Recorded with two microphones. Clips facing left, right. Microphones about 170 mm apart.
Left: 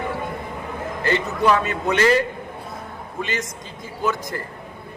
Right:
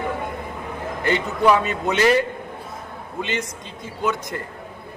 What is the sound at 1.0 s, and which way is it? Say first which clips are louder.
Speech: right 1 dB; 15° right (ahead or behind).